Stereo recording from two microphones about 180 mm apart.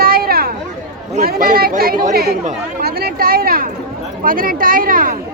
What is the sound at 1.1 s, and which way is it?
Speech, 50° right (ahead or behind).